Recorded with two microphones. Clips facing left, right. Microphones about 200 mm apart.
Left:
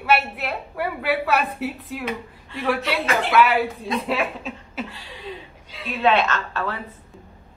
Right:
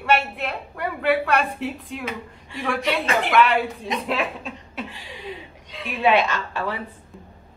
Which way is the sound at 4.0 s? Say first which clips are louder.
Left 1 dB; centre (ahead or behind).